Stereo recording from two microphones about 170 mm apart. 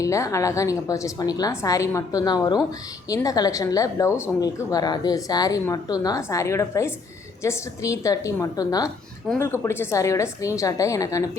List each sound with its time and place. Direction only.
0.0 s speech: 20° left (ahead or behind)